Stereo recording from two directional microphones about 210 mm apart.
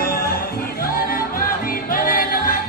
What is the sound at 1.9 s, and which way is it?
Music, 40° left (ahead or behind).